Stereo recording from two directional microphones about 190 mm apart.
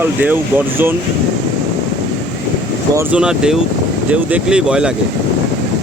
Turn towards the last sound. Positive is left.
turn(degrees=-5)  # may be behind; listen again after turning